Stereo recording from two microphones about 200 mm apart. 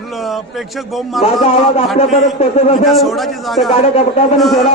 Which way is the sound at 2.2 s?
30° left (ahead or behind).